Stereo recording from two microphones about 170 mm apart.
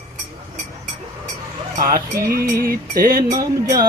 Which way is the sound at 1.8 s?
60° right (ahead or behind).